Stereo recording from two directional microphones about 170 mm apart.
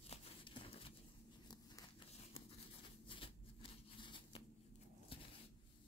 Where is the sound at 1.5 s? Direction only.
25° left (ahead or behind).